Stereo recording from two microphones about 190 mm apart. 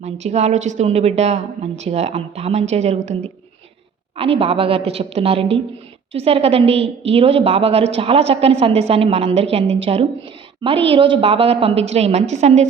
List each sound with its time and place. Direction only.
0.0 s a woman's voice: 35° right (ahead or behind)
4.2 s a woman's voice: 30° right (ahead or behind)